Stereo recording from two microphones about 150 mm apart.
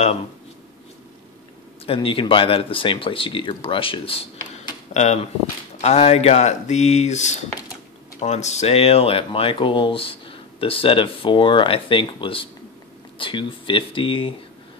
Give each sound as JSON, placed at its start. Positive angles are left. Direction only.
{"t": 1.9, "sound": "speech", "side_deg": 35}
{"t": 4.9, "sound": "speech", "side_deg": 50}